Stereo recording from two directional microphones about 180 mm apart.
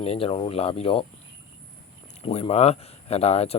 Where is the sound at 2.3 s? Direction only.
35° left (ahead or behind).